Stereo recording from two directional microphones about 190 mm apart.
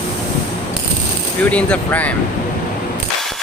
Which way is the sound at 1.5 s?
5° left (ahead or behind).